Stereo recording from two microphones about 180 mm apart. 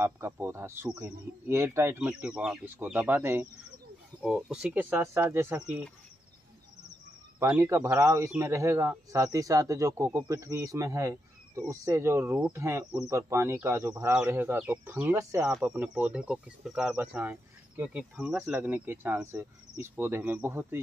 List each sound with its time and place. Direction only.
0.0 s speech: 15° right (ahead or behind)
4.2 s speech: centre (ahead or behind)
7.3 s speech: 10° right (ahead or behind)